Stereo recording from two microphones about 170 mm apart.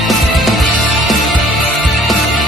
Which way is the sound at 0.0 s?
Centre (ahead or behind).